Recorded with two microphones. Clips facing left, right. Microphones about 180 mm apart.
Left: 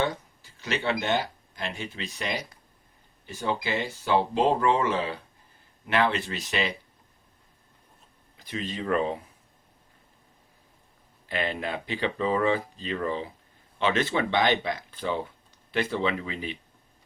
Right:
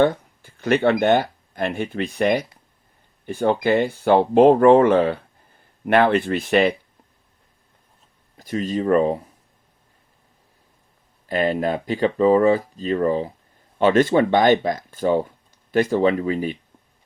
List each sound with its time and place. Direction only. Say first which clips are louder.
0.0 s speech: right 10 dB; 55° right (ahead or behind)
8.4 s speech: right 10 dB; 45° right (ahead or behind)
11.3 s speech: right 9 dB; 45° right (ahead or behind)